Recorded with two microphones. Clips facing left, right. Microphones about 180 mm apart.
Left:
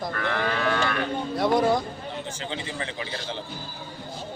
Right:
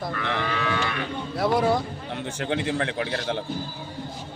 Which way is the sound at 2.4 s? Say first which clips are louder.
Right 11 dB; 60° right (ahead or behind).